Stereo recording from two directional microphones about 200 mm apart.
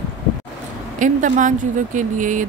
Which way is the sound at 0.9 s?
40° right (ahead or behind).